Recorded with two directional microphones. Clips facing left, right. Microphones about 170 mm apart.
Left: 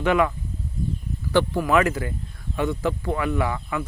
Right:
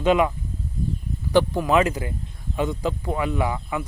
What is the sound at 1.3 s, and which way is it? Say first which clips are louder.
A man's voice: right 1 dB; 20° right (ahead or behind).